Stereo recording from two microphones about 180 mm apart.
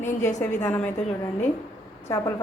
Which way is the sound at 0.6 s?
15° left (ahead or behind).